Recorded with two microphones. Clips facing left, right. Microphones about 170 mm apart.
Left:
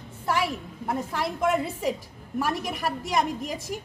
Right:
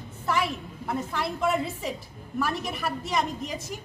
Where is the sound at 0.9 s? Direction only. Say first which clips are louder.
Left 1 dB; 40° left (ahead or behind).